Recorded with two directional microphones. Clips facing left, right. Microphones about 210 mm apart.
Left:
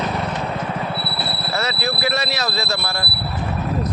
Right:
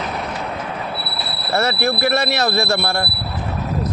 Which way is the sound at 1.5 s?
55° right (ahead or behind).